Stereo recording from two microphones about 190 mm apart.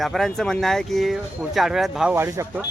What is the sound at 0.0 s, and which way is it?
Speech, centre (ahead or behind).